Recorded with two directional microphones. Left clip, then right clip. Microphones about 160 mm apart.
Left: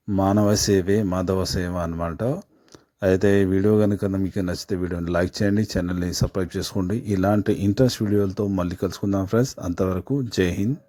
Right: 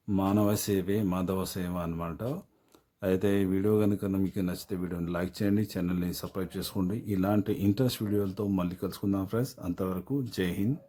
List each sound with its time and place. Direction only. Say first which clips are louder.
0.2 s speech: left 8 dB; 35° left (ahead or behind)